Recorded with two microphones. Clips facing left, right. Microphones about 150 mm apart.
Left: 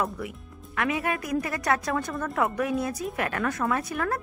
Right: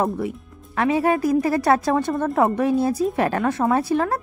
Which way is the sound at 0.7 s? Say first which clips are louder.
Right 8 dB; 30° right (ahead or behind).